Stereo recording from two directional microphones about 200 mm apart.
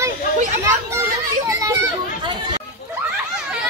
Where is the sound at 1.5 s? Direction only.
15° right (ahead or behind).